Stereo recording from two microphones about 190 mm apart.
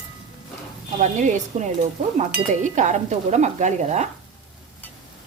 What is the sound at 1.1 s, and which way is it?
Speech, 40° right (ahead or behind).